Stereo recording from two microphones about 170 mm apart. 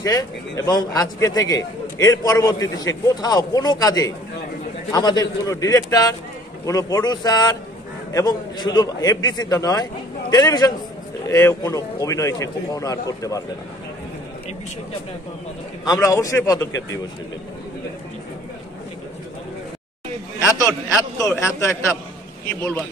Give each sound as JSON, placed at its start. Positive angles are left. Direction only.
{"t": 0.0, "sound": "a man's voice", "side_deg": 20}
{"t": 15.8, "sound": "a man's voice", "side_deg": 20}
{"t": 21.3, "sound": "speech", "side_deg": 15}